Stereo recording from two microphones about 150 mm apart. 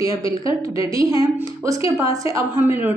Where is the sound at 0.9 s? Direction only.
25° right (ahead or behind).